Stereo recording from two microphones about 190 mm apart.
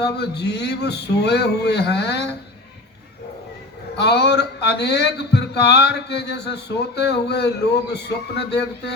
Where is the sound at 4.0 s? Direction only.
60° left (ahead or behind).